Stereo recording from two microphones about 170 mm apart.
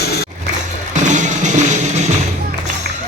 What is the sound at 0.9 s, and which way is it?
Music, 45° right (ahead or behind).